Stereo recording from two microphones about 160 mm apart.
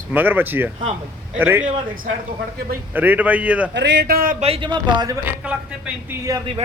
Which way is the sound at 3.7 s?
90° right.